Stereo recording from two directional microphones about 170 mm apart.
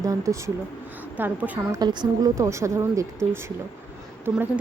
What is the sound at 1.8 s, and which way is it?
A woman's voice, 25° right (ahead or behind).